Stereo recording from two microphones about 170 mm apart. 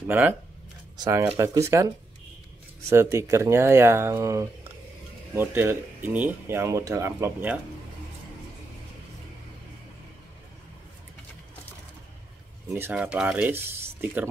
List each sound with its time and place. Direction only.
0.1 s speech: 10° right (ahead or behind)
0.9 s speech: 25° right (ahead or behind)
2.9 s speech: 15° right (ahead or behind)
12.7 s speech: 10° right (ahead or behind)